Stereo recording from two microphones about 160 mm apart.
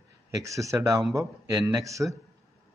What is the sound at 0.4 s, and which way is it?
Speech, 20° right (ahead or behind).